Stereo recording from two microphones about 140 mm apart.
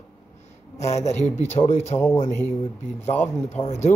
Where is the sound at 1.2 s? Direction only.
55° left (ahead or behind).